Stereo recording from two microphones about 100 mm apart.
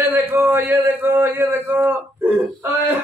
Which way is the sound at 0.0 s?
20° right (ahead or behind).